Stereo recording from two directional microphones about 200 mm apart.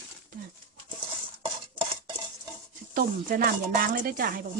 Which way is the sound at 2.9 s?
45° right (ahead or behind).